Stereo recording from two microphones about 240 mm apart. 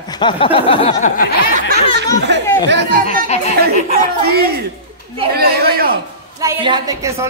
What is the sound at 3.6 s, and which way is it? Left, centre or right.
Speech, right.